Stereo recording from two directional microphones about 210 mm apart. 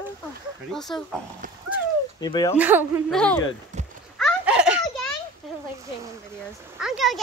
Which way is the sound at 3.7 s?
35° right (ahead or behind).